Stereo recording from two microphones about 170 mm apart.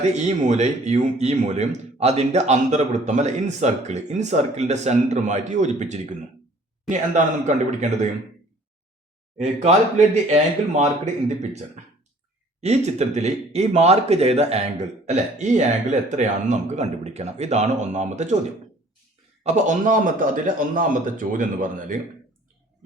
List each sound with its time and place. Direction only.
0.0 s speech: 45° right (ahead or behind)
10.3 s speech: 40° right (ahead or behind)
12.6 s speech: 40° right (ahead or behind)
19.4 s speech: 45° right (ahead or behind)